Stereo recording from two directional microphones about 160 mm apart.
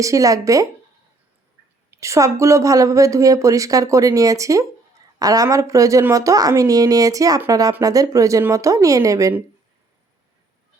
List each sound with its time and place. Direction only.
0.0 s speech: 20° right (ahead or behind)
1.9 s speech: 20° right (ahead or behind)